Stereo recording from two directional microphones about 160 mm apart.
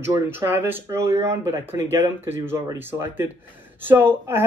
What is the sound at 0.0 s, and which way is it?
Speech, 15° right (ahead or behind).